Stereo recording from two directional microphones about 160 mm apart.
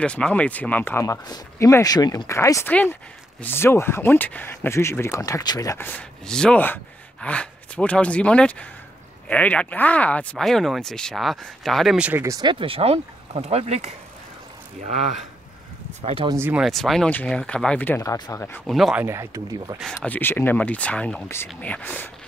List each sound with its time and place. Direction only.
0.0 s speech: 5° left (ahead or behind)
5.9 s speech: 5° left (ahead or behind); by 12.4 s 15° right (ahead or behind)
12.4 s speech: 30° right (ahead or behind)
16.0 s speech: 35° right (ahead or behind)
16.3 s speech: 15° right (ahead or behind)
16.6 s speech: centre (ahead or behind)
18.1 s speech: 25° left (ahead or behind)
18.7 s speech: centre (ahead or behind)
19.0 s speech: 20° right (ahead or behind)
19.8 s speech: centre (ahead or behind)